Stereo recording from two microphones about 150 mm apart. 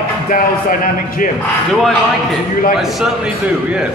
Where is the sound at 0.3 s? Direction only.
70° left (ahead or behind).